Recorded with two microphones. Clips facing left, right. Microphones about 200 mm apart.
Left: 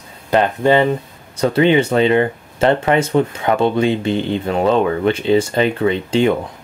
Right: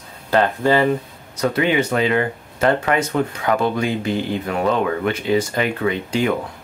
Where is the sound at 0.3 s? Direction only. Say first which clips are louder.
Left 3 dB; 20° left (ahead or behind).